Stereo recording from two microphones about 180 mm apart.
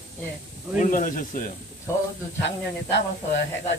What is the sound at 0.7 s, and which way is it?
Speech, 45° left (ahead or behind).